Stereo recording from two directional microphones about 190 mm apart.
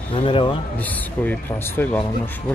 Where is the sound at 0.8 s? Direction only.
10° left (ahead or behind).